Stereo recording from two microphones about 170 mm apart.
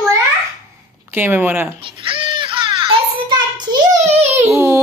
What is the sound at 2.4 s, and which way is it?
Child singing, 30° right (ahead or behind).